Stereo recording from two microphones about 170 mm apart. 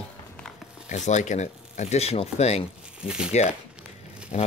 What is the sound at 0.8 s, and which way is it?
Speech, 45° left (ahead or behind).